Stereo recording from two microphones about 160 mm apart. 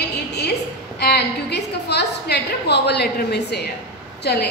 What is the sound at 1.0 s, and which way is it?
A woman's voice, 90° left.